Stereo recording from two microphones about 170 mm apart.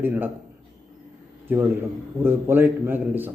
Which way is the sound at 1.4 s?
15° right (ahead or behind).